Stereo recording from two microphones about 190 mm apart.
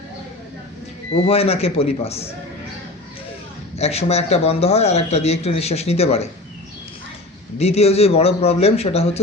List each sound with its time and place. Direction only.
1.1 s a man's voice: 30° left (ahead or behind)
3.8 s a man's voice: 35° left (ahead or behind)
7.6 s a man's voice: 35° left (ahead or behind)